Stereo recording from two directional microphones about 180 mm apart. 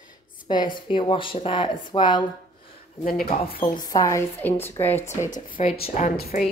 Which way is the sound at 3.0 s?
55° left (ahead or behind).